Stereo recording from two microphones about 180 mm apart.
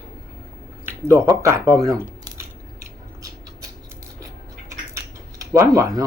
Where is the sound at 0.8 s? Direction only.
15° right (ahead or behind).